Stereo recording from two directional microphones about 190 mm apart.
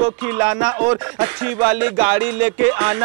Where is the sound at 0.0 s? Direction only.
10° right (ahead or behind).